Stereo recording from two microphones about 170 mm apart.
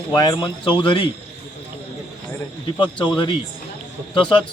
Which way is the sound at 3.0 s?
25° left (ahead or behind).